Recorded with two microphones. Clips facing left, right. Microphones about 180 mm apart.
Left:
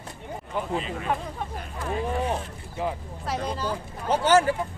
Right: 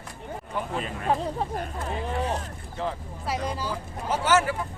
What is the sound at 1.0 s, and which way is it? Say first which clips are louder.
Speech: right 3 dB; 35° right (ahead or behind).